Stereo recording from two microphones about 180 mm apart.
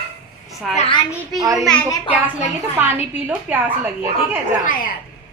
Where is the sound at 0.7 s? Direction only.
30° left (ahead or behind).